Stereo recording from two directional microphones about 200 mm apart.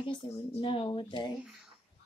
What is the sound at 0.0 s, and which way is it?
Speech, 25° left (ahead or behind).